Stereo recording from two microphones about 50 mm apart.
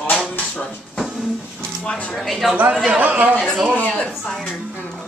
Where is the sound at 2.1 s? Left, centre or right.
Centre.